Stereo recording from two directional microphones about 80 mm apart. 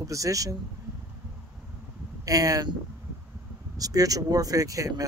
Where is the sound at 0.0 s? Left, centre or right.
Right.